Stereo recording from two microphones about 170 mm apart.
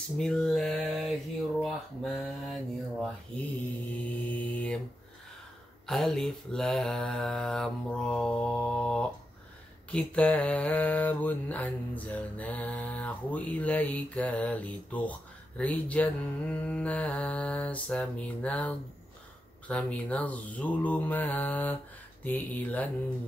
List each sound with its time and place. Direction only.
0.2 s mantra: 5° left (ahead or behind)
1.6 s speech: centre (ahead or behind)
4.3 s mantra: 10° left (ahead or behind)
5.9 s mantra: centre (ahead or behind)